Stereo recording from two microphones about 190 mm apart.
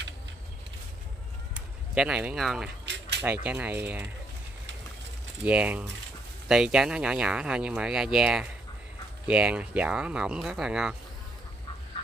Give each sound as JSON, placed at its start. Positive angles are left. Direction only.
{"t": 1.5, "sound": "speech", "side_deg": -5}
{"t": 2.8, "sound": "a sound", "side_deg": -65}
{"t": 3.2, "sound": "speech", "side_deg": -10}
{"t": 5.4, "sound": "speech", "side_deg": -5}